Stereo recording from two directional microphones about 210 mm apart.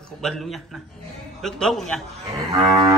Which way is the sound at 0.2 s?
Centre (ahead or behind).